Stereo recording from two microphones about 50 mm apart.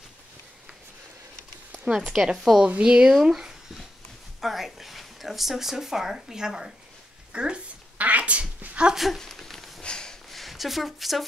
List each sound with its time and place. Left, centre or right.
2.0 s speech: centre
2.3 s speech: centre
2.6 s speech: right
8.0 s cat: right
8.9 s speech: centre
9.2 s a sound: centre
9.8 s a sound: centre
10.3 s speech: centre